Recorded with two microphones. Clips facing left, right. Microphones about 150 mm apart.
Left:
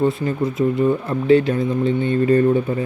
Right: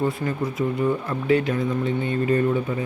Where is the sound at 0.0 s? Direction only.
25° left (ahead or behind).